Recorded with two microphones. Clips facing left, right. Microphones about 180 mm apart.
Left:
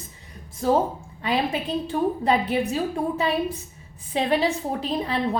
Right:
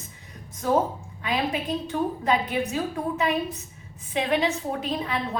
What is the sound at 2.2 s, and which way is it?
Speech, 30° left (ahead or behind).